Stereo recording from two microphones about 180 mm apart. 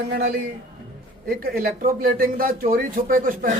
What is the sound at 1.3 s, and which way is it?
Speech, 55° right (ahead or behind).